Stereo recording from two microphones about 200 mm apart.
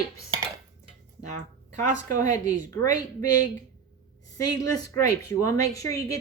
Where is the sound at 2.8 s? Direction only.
20° left (ahead or behind).